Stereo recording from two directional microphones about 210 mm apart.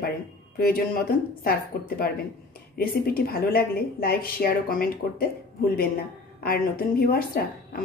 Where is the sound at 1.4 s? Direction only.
45° left (ahead or behind).